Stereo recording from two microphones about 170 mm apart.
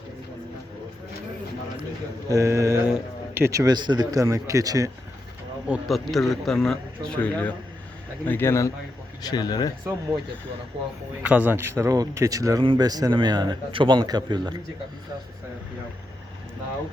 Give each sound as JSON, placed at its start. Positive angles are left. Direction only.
{"t": 2.3, "sound": "a sound", "side_deg": -20}
{"t": 3.3, "sound": "speech", "side_deg": -15}
{"t": 5.6, "sound": "a man's voice", "side_deg": -5}
{"t": 11.2, "sound": "speech", "side_deg": -10}